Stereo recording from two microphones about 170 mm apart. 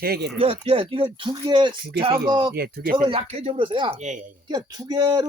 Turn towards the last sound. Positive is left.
turn(degrees=-25)  # may be behind; listen again after turning